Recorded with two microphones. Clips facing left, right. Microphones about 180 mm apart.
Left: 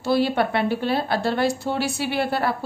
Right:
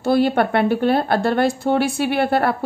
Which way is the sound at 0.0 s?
50° right (ahead or behind).